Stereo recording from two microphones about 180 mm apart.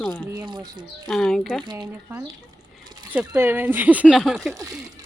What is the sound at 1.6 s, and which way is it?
Speech, 25° right (ahead or behind).